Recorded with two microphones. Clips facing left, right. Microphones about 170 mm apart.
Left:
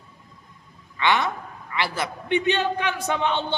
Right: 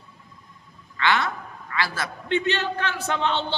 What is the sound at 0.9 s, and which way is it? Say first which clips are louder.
A man's voice: left 1 dB; 15° left (ahead or behind).